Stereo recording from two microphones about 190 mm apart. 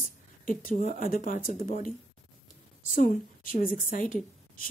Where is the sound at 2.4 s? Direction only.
45° left (ahead or behind).